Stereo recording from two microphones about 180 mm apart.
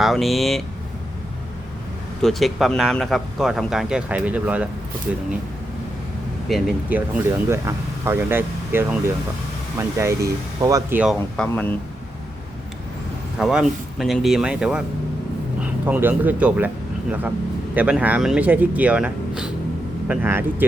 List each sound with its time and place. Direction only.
0.0 s speech: centre (ahead or behind)
2.2 s speech: centre (ahead or behind)
6.5 s speech: 5° right (ahead or behind)
11.3 s speech: 10° left (ahead or behind)
13.4 s speech: 5° right (ahead or behind)